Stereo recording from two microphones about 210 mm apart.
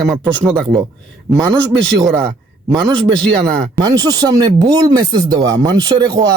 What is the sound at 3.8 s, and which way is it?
Speech, 20° right (ahead or behind).